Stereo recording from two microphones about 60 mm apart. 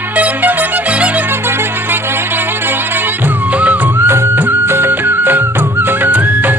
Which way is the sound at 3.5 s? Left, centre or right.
Right.